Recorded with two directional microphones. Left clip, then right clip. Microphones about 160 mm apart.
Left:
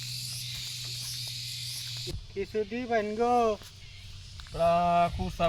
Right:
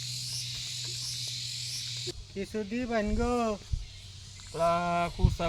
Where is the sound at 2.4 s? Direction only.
35° right (ahead or behind).